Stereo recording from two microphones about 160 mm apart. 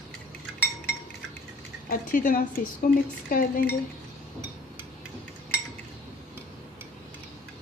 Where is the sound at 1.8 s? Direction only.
60° left (ahead or behind).